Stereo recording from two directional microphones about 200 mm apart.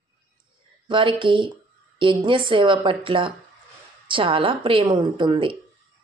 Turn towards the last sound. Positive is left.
turn(degrees=-25)  # may be behind; listen again after turning